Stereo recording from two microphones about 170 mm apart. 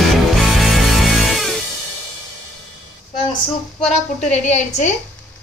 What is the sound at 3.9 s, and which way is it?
A woman's voice, 40° left (ahead or behind).